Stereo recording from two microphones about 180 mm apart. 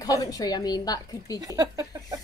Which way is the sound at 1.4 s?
20° right (ahead or behind).